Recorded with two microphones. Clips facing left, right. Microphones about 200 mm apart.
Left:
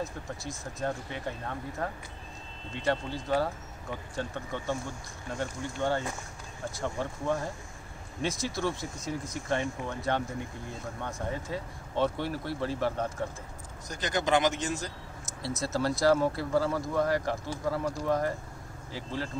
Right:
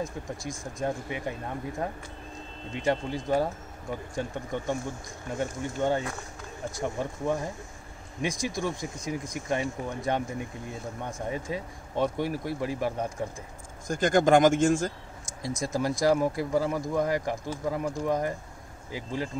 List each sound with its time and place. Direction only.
0.0 s speech: centre (ahead or behind)
0.8 s speech: 15° right (ahead or behind)
11.2 s speech: 15° right (ahead or behind)
13.8 s speech: 50° right (ahead or behind)
15.6 s speech: 15° right (ahead or behind)